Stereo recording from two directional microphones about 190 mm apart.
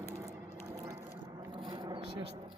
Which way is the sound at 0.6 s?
20° right (ahead or behind).